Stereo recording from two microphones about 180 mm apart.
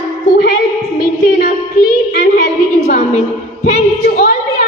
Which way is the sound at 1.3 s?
55° left (ahead or behind).